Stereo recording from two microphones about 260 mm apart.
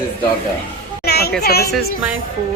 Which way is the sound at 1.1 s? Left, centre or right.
Left.